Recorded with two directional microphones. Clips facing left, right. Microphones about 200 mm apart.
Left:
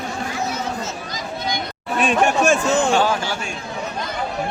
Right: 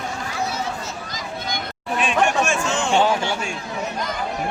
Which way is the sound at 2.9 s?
20° right (ahead or behind).